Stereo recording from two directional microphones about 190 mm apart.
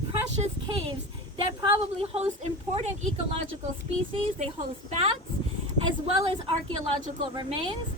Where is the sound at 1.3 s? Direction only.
25° right (ahead or behind).